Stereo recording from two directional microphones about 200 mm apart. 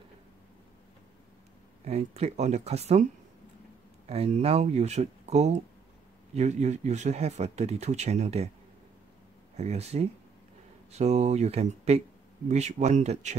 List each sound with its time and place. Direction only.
1.9 s speech: 30° right (ahead or behind)
4.1 s speech: 30° right (ahead or behind)
9.6 s speech: 35° right (ahead or behind)